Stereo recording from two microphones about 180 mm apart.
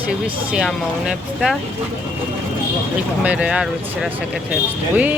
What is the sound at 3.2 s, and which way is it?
Speech, 5° right (ahead or behind).